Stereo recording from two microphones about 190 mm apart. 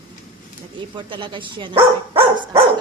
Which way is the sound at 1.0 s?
25° right (ahead or behind).